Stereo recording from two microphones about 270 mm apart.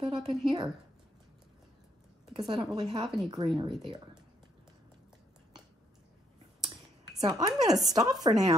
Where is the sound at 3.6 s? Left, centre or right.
Centre.